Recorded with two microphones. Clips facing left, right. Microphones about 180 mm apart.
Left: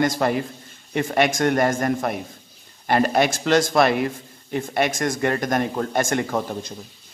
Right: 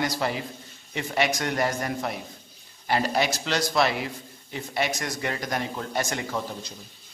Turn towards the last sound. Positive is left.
turn(degrees=50)  # may be behind; listen again after turning